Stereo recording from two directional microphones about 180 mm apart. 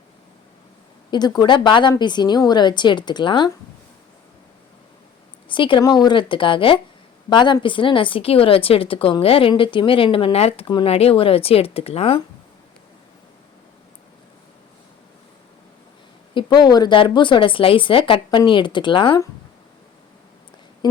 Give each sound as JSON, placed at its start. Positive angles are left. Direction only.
{"t": 1.1, "sound": "speech", "side_deg": 20}
{"t": 5.5, "sound": "speech", "side_deg": 25}
{"t": 16.3, "sound": "speech", "side_deg": 25}